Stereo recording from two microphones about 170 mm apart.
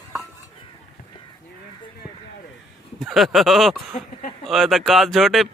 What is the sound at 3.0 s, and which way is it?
Speech, centre (ahead or behind).